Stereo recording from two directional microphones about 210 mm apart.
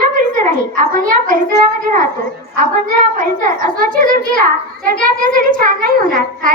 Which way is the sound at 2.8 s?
40° right (ahead or behind).